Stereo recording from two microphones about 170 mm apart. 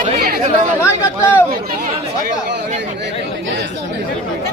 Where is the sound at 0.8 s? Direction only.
15° left (ahead or behind).